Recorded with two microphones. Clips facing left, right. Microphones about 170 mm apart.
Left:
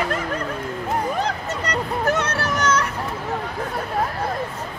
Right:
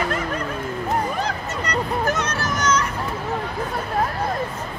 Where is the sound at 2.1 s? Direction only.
65° left (ahead or behind).